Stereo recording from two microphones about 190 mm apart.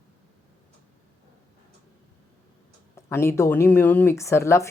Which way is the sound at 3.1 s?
15° left (ahead or behind).